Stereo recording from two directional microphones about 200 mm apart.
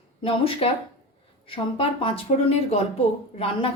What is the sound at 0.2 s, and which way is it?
A woman's voice, 30° left (ahead or behind).